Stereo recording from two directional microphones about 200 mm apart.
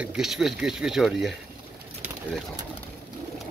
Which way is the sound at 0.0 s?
5° right (ahead or behind).